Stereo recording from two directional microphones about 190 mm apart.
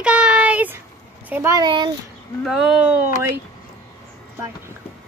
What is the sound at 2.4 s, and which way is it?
Speech, centre (ahead or behind).